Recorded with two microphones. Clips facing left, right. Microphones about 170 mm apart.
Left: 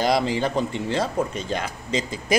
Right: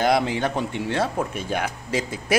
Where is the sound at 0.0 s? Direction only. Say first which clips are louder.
Even; 60° right (ahead or behind).